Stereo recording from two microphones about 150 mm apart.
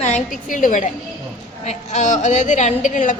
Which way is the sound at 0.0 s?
55° left (ahead or behind).